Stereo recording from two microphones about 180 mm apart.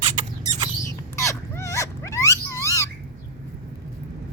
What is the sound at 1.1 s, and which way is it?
Wild animals, 15° left (ahead or behind).